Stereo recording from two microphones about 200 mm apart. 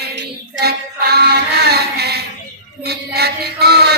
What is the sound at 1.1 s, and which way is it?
Chant, 55° right (ahead or behind).